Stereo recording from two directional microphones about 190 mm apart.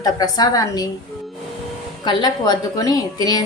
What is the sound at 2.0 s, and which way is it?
A woman's voice, 25° left (ahead or behind).